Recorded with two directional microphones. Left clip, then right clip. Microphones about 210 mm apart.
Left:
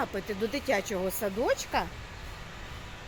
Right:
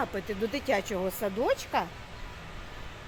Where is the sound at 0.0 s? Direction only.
5° right (ahead or behind).